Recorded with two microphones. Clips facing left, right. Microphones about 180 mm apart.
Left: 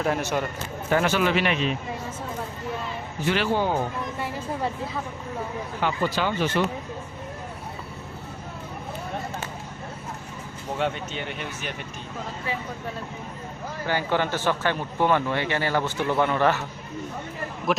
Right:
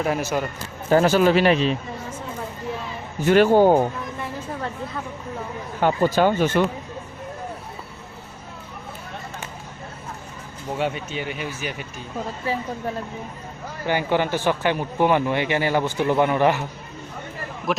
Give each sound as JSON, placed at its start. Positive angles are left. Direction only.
{"t": 0.0, "sound": "a man's voice", "side_deg": -5}
{"t": 0.9, "sound": "speech", "side_deg": -35}
{"t": 3.2, "sound": "speech", "side_deg": -45}
{"t": 5.8, "sound": "speech", "side_deg": -45}
{"t": 10.8, "sound": "speech", "side_deg": -5}
{"t": 13.8, "sound": "speech", "side_deg": -15}
{"t": 17.7, "sound": "a man's voice", "side_deg": 0}